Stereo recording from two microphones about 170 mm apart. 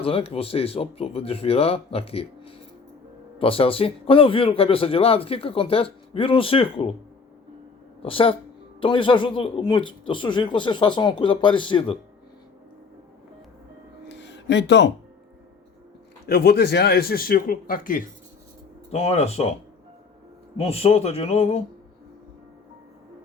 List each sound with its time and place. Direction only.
0.0 s speech: 35° left (ahead or behind)
8.0 s speech: 30° left (ahead or behind)
14.1 s music: 90° left
16.2 s speech: 65° left (ahead or behind)
18.9 s speech: 40° left (ahead or behind)
20.6 s speech: 35° left (ahead or behind)